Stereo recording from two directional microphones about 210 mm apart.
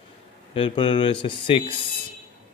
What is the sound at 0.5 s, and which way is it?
Speech, 25° left (ahead or behind).